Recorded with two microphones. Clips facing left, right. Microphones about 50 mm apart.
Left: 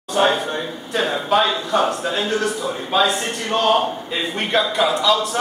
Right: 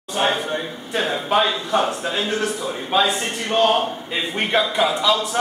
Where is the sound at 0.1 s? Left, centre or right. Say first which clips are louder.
Left 3 dB; centre.